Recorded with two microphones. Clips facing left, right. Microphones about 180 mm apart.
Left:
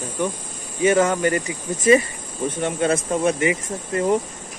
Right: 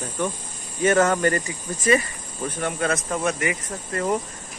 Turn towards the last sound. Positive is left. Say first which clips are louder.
# left 5 dB
turn(degrees=25)  # may be behind; listen again after turning